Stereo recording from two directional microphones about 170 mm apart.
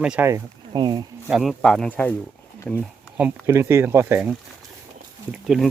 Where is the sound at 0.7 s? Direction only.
25° right (ahead or behind).